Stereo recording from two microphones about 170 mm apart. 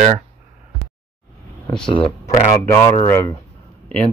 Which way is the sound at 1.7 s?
25° left (ahead or behind).